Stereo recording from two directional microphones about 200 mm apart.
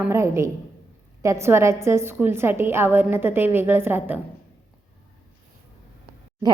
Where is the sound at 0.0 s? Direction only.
15° right (ahead or behind).